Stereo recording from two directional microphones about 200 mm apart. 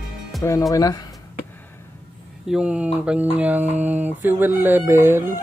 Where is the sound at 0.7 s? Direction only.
20° left (ahead or behind).